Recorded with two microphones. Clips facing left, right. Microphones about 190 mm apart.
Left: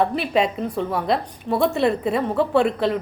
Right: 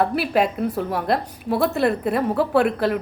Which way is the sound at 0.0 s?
5° right (ahead or behind).